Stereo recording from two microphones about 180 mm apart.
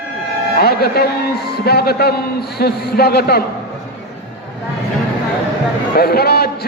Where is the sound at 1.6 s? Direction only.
60° left (ahead or behind).